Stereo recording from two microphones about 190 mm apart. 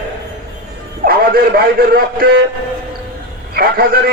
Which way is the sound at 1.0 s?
50° right (ahead or behind).